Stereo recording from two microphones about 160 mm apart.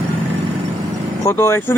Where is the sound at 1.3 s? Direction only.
15° left (ahead or behind).